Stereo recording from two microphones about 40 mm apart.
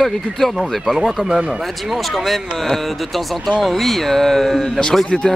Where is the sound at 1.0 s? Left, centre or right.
Centre.